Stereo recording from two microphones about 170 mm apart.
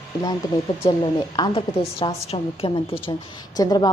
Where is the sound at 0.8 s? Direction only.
30° left (ahead or behind).